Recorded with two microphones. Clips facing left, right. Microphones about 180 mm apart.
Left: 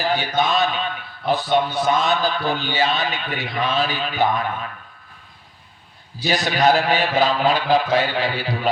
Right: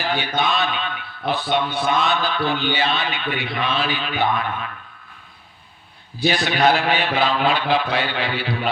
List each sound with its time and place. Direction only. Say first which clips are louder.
0.0 s a man's voice: left 2 dB; 40° left (ahead or behind)
6.2 s a man's voice: even; 40° left (ahead or behind)